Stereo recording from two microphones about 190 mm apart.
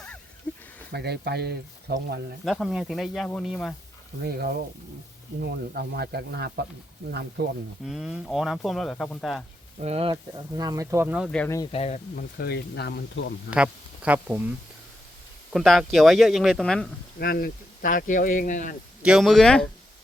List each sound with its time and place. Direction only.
0.5 s a sound: 10° left (ahead or behind)
0.9 s speech: 60° right (ahead or behind)
2.4 s speech: centre (ahead or behind)
4.2 s speech: 55° right (ahead or behind)
7.9 s speech: 5° right (ahead or behind)
9.8 s speech: 30° right (ahead or behind); by 11.3 s 10° right (ahead or behind)
11.3 s speech: 5° left (ahead or behind)
11.7 s speech: 30° left (ahead or behind)
12.1 s speech: 55° left (ahead or behind)
13.5 s speech: 5° right (ahead or behind)
15.5 s speech: centre (ahead or behind)
17.2 s speech: 55° left (ahead or behind)
19.0 s speech: centre (ahead or behind)